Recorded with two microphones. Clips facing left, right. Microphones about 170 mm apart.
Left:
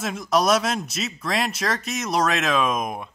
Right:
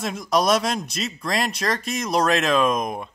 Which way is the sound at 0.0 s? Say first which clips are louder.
Even; centre (ahead or behind).